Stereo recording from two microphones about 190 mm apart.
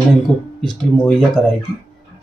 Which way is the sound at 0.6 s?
Centre (ahead or behind).